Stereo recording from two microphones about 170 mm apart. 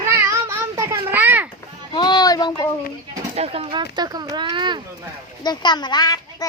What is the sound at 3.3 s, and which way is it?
Speech, 35° right (ahead or behind).